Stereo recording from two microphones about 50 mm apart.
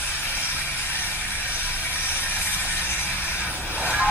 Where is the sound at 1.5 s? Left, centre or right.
Left.